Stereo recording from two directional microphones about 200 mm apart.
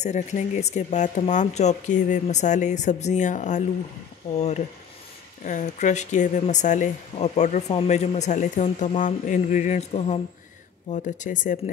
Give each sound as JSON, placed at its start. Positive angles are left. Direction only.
{"t": 0.0, "sound": "speech", "side_deg": 35}